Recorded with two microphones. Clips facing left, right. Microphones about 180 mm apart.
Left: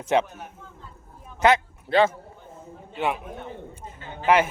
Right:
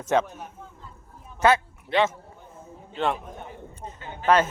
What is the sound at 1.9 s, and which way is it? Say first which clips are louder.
Speech: left 3 dB; 30° left (ahead or behind).